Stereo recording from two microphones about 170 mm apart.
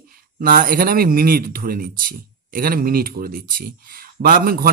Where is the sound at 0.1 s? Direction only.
55° right (ahead or behind).